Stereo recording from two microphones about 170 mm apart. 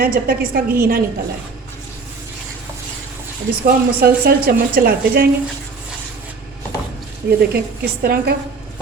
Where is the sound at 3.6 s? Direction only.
65° right (ahead or behind).